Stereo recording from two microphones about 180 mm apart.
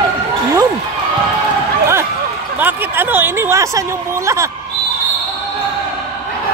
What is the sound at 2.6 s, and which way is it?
Speech, 10° right (ahead or behind).